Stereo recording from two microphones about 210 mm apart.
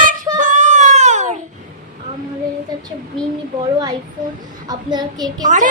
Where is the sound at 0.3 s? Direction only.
35° right (ahead or behind).